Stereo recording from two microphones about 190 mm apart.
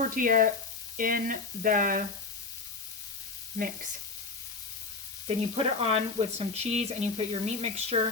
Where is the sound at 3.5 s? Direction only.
45° right (ahead or behind).